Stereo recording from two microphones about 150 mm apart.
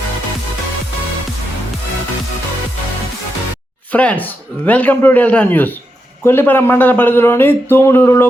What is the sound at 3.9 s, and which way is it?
A man's voice, 10° left (ahead or behind).